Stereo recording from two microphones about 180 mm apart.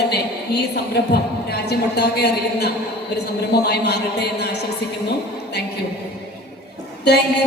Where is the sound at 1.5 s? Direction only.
65° left (ahead or behind).